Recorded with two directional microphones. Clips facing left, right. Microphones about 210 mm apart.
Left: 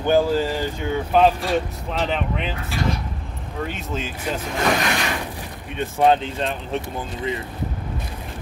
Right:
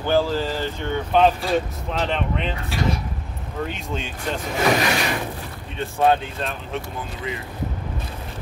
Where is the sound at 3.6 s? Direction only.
Centre (ahead or behind).